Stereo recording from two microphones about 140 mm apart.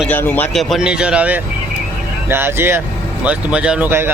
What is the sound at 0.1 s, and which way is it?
Speech, 15° left (ahead or behind).